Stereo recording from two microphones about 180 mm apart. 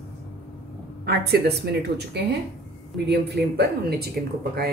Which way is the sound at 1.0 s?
65° right (ahead or behind).